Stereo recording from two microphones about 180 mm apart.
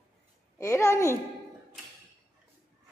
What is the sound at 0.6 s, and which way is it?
Speech, 15° left (ahead or behind).